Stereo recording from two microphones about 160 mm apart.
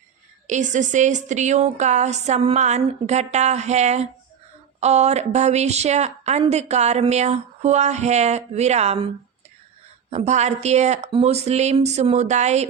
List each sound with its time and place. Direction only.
0.4 s a woman's voice: 50° right (ahead or behind)
10.1 s a woman's voice: 45° right (ahead or behind)